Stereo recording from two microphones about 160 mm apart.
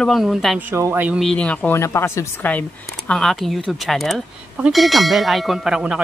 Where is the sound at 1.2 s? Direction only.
5° left (ahead or behind).